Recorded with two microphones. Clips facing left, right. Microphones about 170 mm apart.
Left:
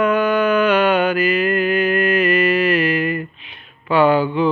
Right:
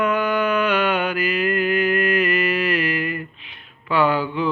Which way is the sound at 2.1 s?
70° left (ahead or behind).